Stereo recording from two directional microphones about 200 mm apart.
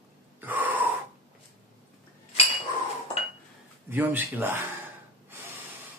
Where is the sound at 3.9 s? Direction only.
10° right (ahead or behind).